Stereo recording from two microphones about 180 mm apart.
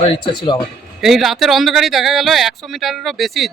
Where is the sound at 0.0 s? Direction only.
25° left (ahead or behind).